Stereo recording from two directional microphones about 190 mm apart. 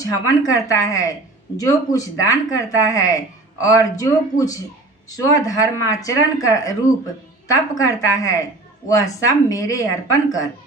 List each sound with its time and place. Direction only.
0.0 s a woman's voice: 20° left (ahead or behind)